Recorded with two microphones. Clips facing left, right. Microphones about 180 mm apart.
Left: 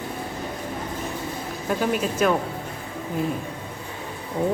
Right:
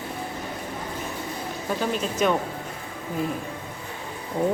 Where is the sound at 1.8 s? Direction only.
5° left (ahead or behind).